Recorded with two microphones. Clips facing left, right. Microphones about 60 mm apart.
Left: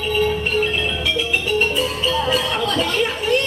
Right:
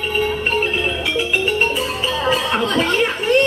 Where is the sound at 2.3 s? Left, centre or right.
Right.